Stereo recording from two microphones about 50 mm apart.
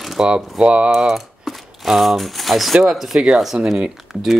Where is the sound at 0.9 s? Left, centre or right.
Centre.